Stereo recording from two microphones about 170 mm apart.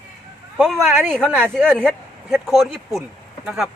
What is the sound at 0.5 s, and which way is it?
Speech, centre (ahead or behind).